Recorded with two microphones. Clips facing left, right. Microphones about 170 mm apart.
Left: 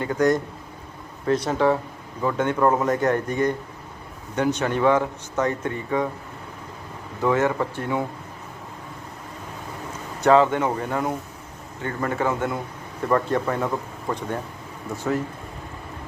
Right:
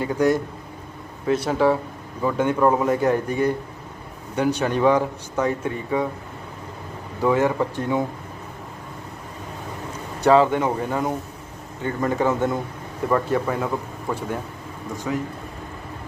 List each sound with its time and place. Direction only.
0.0 s speech: 10° right (ahead or behind)
1.5 s a man's voice: 5° right (ahead or behind)
7.2 s speech: 15° right (ahead or behind)
10.2 s a man's voice: 15° right (ahead or behind)
13.1 s a man's voice: 5° right (ahead or behind)